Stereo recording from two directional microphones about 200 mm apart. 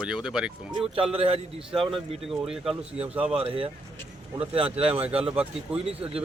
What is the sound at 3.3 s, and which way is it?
Speech, 30° right (ahead or behind).